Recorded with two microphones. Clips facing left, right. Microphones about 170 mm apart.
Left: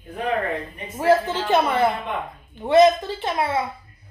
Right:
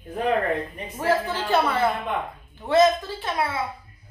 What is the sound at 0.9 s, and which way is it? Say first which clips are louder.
A woman's voice: left 5 dB; 15° left (ahead or behind).